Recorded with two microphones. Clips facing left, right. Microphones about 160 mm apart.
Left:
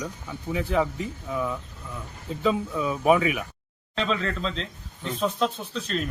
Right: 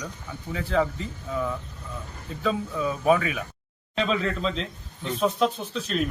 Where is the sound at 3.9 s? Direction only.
15° right (ahead or behind).